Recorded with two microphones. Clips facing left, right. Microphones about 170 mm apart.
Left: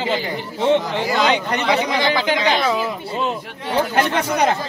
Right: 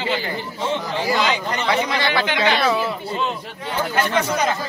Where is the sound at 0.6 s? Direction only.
65° left (ahead or behind).